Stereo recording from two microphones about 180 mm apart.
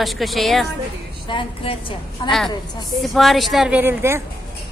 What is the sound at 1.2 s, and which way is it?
Speech, 30° left (ahead or behind).